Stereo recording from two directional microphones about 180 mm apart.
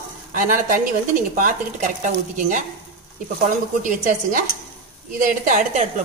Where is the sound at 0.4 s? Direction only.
50° right (ahead or behind).